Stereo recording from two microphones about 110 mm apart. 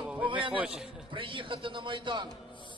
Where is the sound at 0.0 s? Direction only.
15° right (ahead or behind).